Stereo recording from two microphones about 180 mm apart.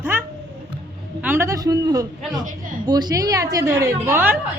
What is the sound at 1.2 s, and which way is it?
A woman's voice, 15° right (ahead or behind).